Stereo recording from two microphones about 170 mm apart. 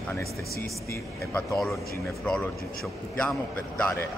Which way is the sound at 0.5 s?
65° left (ahead or behind).